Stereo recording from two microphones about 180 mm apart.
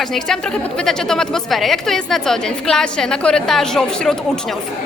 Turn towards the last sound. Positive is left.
turn(degrees=5)  # may be behind; listen again after turning